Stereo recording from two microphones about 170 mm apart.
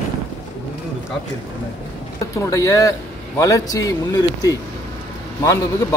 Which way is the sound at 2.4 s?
20° left (ahead or behind).